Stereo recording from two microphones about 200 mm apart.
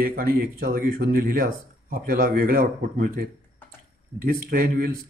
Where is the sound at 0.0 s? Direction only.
45° right (ahead or behind).